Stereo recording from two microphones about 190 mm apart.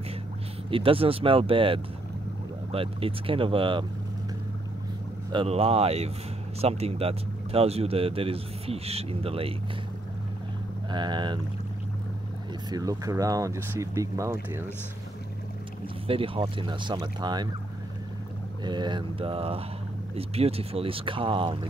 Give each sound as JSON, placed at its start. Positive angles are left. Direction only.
{"t": 0.7, "sound": "speech", "side_deg": -30}
{"t": 5.3, "sound": "speech", "side_deg": -30}
{"t": 10.9, "sound": "speech", "side_deg": -25}
{"t": 12.6, "sound": "speech", "side_deg": -20}
{"t": 16.1, "sound": "speech", "side_deg": -30}
{"t": 18.6, "sound": "speech", "side_deg": -25}